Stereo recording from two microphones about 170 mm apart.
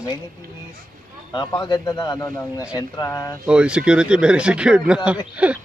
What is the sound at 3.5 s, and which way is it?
A man's voice, 5° right (ahead or behind).